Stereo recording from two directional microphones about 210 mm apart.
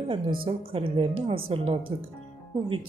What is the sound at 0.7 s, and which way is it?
Speech, 25° right (ahead or behind).